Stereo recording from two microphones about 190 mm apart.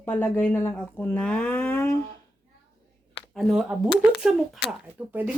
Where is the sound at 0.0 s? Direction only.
10° left (ahead or behind).